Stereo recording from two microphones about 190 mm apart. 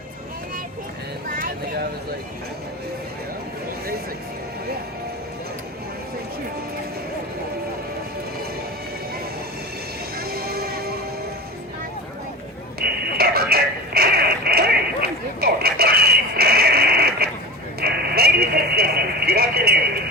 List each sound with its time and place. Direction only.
1.3 s vehicle: 50° right (ahead or behind)
10.2 s music: 55° right (ahead or behind)
12.8 s radio: 55° right (ahead or behind)
15.0 s a sound: 55° right (ahead or behind)